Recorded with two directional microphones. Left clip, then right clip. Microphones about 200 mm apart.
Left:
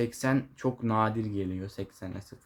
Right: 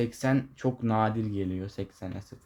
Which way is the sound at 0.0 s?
15° right (ahead or behind).